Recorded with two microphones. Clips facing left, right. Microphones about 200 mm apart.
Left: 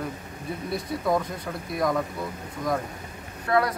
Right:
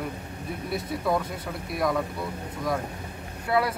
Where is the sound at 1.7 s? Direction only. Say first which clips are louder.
Left 1 dB; centre (ahead or behind).